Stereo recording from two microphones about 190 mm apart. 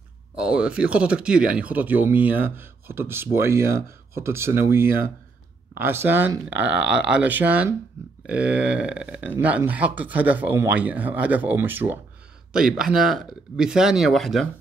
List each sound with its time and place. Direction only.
0.4 s speech: 5° right (ahead or behind)